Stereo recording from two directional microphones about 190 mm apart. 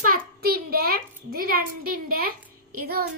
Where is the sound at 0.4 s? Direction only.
55° right (ahead or behind).